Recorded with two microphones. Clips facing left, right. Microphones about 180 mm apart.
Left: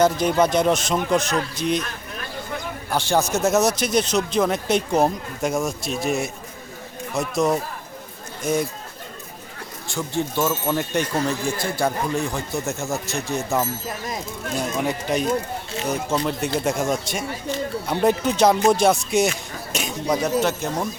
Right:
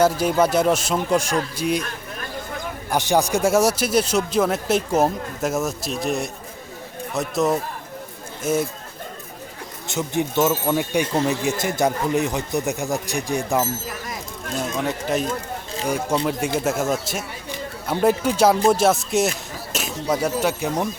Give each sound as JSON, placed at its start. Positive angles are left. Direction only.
{"t": 0.0, "sound": "a man's voice", "side_deg": -5}
{"t": 2.9, "sound": "speech", "side_deg": -15}
{"t": 9.8, "sound": "a man's voice", "side_deg": -20}
{"t": 14.8, "sound": "speech", "side_deg": 0}
{"t": 15.9, "sound": "speech", "side_deg": -10}